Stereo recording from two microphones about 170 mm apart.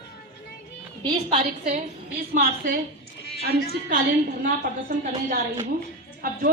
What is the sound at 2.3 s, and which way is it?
Speech, 55° right (ahead or behind).